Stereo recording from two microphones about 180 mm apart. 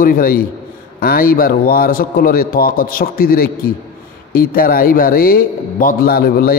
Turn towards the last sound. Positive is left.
turn(degrees=55)  # may be behind; listen again after turning